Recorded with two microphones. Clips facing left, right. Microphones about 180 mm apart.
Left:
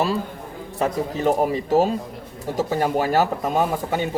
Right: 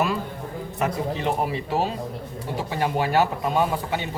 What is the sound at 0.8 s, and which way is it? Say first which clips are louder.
Speech: left 3 dB; 40° left (ahead or behind).